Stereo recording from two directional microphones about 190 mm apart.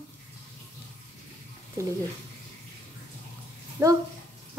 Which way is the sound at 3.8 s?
15° right (ahead or behind).